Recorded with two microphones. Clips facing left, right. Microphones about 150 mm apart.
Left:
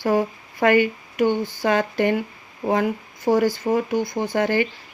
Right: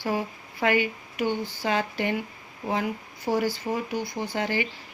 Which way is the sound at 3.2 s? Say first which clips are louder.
Left 7 dB; 50° left (ahead or behind).